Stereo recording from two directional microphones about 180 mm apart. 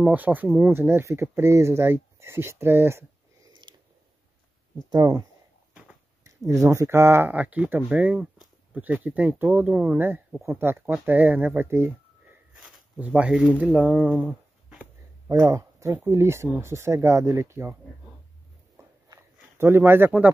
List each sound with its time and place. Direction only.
0.0 s speech: 10° right (ahead or behind)
3.6 s a sound: 25° right (ahead or behind)
4.7 s speech: 20° right (ahead or behind)
6.2 s speech: 15° right (ahead or behind)
15.2 s speech: 15° right (ahead or behind)
19.6 s speech: 10° right (ahead or behind)